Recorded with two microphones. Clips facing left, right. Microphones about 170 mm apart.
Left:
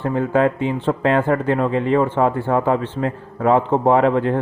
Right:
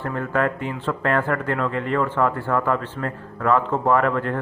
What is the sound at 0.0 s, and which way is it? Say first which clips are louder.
Speech: left 6 dB; 20° left (ahead or behind).